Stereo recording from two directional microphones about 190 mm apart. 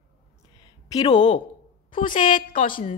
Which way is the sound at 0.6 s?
20° left (ahead or behind).